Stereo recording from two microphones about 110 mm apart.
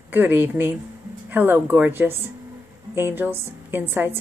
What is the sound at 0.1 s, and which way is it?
A woman's voice, 15° right (ahead or behind).